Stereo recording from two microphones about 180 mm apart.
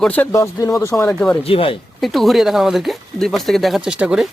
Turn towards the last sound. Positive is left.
turn(degrees=-5)  # may be behind; listen again after turning